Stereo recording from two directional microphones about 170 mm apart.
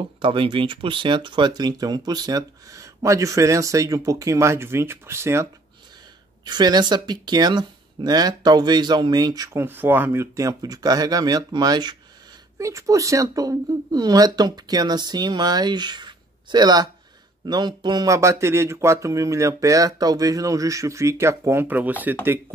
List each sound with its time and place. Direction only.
0.2 s speech: 30° right (ahead or behind); by 21.9 s 10° right (ahead or behind)